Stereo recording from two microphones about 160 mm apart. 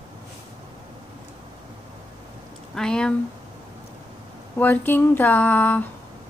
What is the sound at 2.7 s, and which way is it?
Speech, 5° left (ahead or behind).